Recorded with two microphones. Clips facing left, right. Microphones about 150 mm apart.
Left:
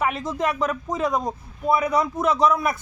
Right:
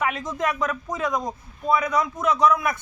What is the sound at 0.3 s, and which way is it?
A man's voice, 30° left (ahead or behind).